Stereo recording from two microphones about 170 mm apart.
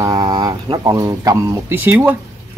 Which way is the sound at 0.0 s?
20° right (ahead or behind).